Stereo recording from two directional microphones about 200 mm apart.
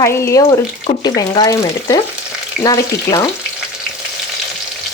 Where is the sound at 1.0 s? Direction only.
20° left (ahead or behind).